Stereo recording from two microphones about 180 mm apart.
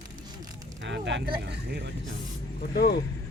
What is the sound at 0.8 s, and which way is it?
Speech, 80° right.